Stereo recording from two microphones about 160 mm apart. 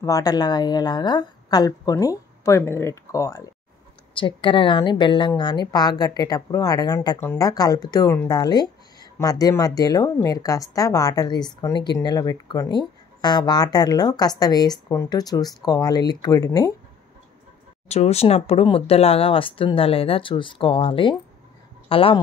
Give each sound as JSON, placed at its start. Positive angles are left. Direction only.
{"t": 0.0, "sound": "speech", "side_deg": 25}
{"t": 4.1, "sound": "speech", "side_deg": 30}
{"t": 17.8, "sound": "speech", "side_deg": 40}